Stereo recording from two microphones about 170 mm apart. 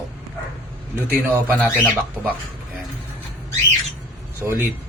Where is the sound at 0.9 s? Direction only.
15° right (ahead or behind).